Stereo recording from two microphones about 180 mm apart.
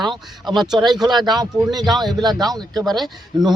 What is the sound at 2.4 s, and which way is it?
Speech, 20° right (ahead or behind).